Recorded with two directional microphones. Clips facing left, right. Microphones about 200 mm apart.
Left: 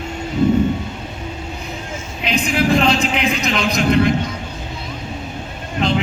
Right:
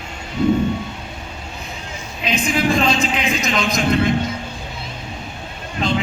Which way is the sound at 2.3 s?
65° left (ahead or behind).